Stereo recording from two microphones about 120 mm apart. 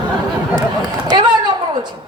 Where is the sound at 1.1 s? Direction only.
35° right (ahead or behind).